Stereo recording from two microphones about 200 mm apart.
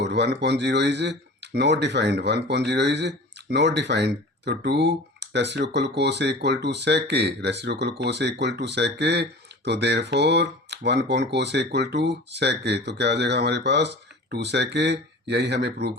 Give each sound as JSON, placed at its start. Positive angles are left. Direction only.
{"t": 0.0, "sound": "speech", "side_deg": -60}